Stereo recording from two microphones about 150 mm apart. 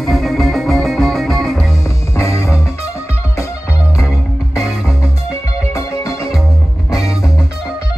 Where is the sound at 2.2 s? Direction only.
20° left (ahead or behind).